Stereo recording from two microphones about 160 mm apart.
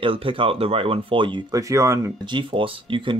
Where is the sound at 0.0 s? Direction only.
35° right (ahead or behind); by 2.1 s 20° right (ahead or behind).